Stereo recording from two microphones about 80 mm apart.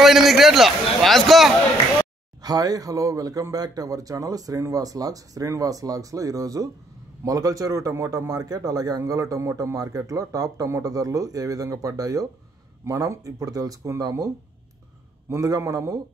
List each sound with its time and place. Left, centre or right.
0.0 s a man's voice: centre
2.4 s speech: right
8.3 s speech: right
15.4 s speech: right